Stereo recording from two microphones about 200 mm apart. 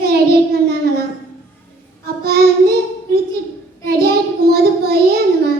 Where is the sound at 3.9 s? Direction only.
50° right (ahead or behind).